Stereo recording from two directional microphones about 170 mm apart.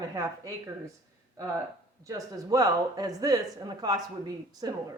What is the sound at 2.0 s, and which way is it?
Speech, 20° right (ahead or behind).